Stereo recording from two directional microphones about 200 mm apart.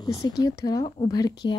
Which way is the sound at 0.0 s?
15° left (ahead or behind).